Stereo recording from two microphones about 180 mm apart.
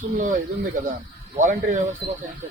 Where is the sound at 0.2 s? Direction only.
45° right (ahead or behind).